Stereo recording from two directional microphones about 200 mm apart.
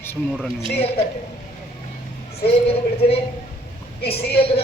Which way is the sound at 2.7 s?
30° left (ahead or behind).